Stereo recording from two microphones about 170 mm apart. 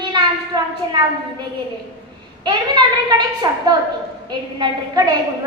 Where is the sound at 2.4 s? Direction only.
25° right (ahead or behind).